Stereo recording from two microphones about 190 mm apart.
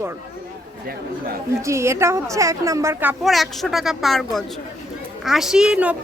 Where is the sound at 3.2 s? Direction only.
Centre (ahead or behind).